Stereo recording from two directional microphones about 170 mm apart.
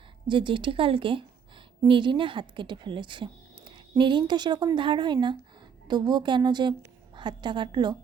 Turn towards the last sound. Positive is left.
turn(degrees=-25)  # may be behind; listen again after turning